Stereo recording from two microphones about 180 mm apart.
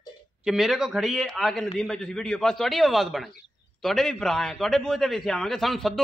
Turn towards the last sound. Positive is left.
turn(degrees=0)  # may be behind; listen again after turning